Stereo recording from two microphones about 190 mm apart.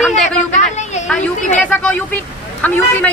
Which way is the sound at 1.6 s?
5° left (ahead or behind).